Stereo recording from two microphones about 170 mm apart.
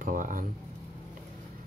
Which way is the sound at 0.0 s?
50° right (ahead or behind).